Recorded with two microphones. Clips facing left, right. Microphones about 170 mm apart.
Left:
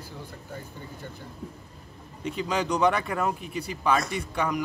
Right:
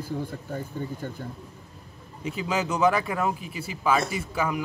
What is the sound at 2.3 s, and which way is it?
Speech, 5° right (ahead or behind).